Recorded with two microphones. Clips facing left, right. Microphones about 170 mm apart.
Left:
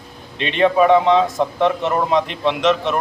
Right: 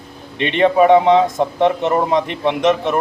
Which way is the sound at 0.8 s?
15° right (ahead or behind).